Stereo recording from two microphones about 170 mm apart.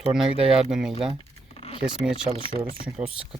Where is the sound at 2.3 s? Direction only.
30° right (ahead or behind).